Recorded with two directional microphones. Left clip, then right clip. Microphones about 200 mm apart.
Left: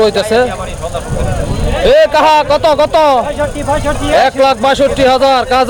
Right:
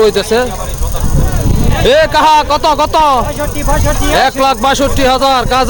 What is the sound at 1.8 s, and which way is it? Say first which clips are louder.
A man's voice: left 1 dB; 5° right (ahead or behind).